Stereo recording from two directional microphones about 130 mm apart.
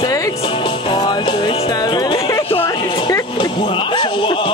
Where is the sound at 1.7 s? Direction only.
30° left (ahead or behind).